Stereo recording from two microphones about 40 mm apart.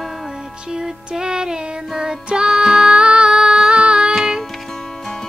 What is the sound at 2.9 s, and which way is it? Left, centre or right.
Female singing, right.